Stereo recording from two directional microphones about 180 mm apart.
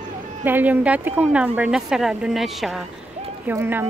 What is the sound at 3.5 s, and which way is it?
Speech, 10° right (ahead or behind).